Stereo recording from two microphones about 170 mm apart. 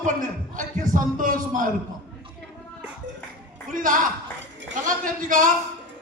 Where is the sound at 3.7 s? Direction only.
50° right (ahead or behind).